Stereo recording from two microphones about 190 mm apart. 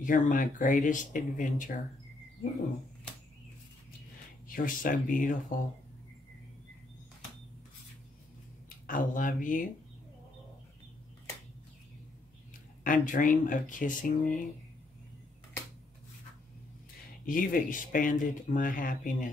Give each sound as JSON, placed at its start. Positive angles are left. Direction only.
{"t": 0.0, "sound": "speech", "side_deg": 45}
{"t": 4.5, "sound": "speech", "side_deg": 45}
{"t": 8.6, "sound": "speech", "side_deg": 45}
{"t": 12.8, "sound": "speech", "side_deg": 45}
{"t": 17.3, "sound": "speech", "side_deg": 45}